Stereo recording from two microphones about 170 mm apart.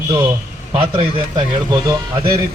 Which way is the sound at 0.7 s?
35° right (ahead or behind).